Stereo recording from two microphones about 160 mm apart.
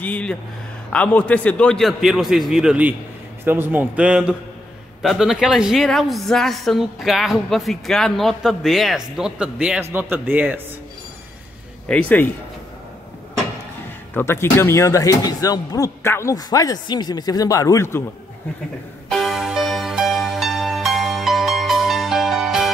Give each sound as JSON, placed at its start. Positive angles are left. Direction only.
{"t": 0.0, "sound": "a woman's voice", "side_deg": 10}
{"t": 11.9, "sound": "speech", "side_deg": 10}
{"t": 14.1, "sound": "speech", "side_deg": 15}
{"t": 19.0, "sound": "music", "side_deg": 0}